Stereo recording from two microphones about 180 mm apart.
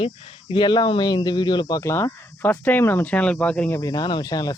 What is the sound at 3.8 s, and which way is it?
Speech, 20° left (ahead or behind).